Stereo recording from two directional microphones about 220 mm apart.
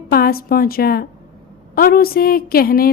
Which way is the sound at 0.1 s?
45° left (ahead or behind).